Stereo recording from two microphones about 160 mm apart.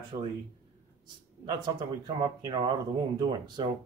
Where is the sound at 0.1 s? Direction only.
40° right (ahead or behind).